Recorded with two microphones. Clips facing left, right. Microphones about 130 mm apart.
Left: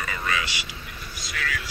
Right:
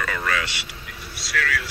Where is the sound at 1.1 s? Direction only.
70° right (ahead or behind).